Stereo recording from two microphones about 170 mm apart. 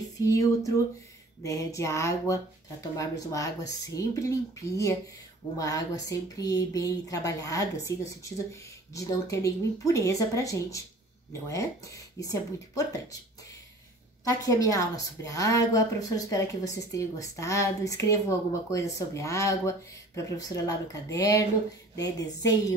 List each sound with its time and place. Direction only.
0.3 s a woman's voice: 20° left (ahead or behind)
14.2 s a woman's voice: 20° left (ahead or behind)